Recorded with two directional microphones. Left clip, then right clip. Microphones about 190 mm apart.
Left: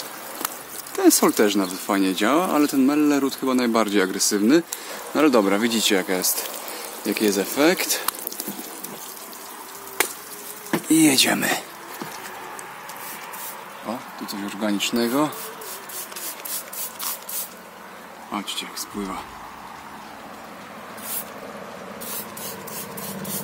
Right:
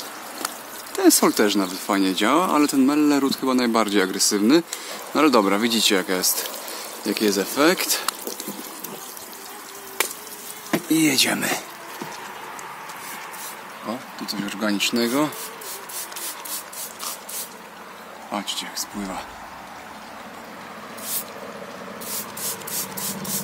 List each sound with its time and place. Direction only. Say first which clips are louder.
0.9 s speech: even; centre (ahead or behind)
10.7 s a sound: left 2 dB; 20° left (ahead or behind)
13.8 s speech: right 1 dB; 10° right (ahead or behind)
18.3 s speech: right 1 dB; 15° right (ahead or behind)